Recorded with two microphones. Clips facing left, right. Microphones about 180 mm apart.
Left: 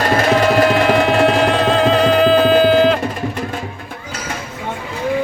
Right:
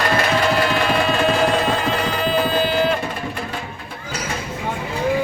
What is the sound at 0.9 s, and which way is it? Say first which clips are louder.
Music: left 5 dB; 75° left (ahead or behind).